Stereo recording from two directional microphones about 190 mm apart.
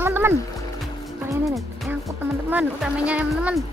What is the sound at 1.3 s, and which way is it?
Music, 15° right (ahead or behind).